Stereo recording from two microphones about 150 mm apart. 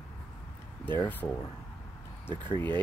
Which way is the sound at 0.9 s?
15° left (ahead or behind).